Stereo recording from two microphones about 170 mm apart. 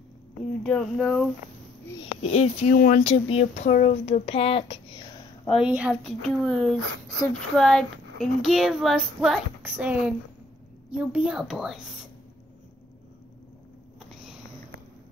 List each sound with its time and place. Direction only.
0.7 s child singing: centre (ahead or behind)
2.2 s speech: 40° left (ahead or behind)
3.0 s speech: 35° left (ahead or behind)
5.5 s child singing: 5° right (ahead or behind)
9.6 s a woman's voice: 10° right (ahead or behind)
10.9 s child singing: 10° right (ahead or behind)